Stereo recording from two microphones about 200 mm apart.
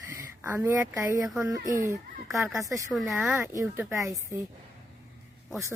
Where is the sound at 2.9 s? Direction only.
Centre (ahead or behind); by 4.2 s 15° right (ahead or behind).